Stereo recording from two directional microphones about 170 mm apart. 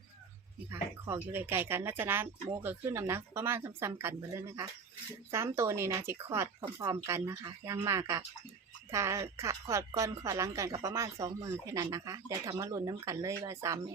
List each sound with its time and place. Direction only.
0.7 s speech: 15° right (ahead or behind)